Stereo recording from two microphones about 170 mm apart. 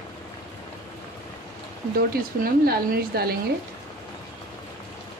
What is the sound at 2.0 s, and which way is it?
Speech, 65° right (ahead or behind).